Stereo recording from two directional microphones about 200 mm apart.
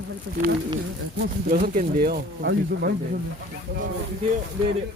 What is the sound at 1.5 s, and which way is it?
Speech, 45° right (ahead or behind).